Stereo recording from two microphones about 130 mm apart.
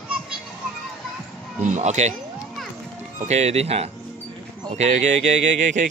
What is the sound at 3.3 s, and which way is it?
Speech, 55° right (ahead or behind).